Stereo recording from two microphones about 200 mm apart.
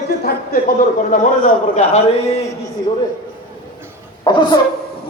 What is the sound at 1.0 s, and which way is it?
A man's voice, 40° left (ahead or behind).